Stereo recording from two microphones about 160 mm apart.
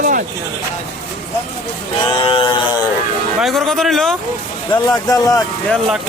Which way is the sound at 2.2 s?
30° left (ahead or behind).